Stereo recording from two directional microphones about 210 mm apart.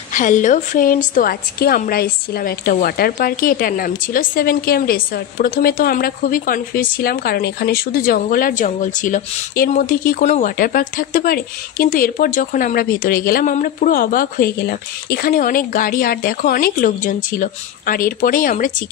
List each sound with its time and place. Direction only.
0.1 s a woman's voice: 35° left (ahead or behind)